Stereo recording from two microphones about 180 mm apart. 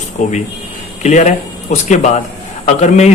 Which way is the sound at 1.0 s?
40° left (ahead or behind).